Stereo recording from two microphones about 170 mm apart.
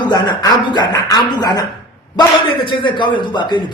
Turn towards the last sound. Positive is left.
turn(degrees=25)  # may be behind; listen again after turning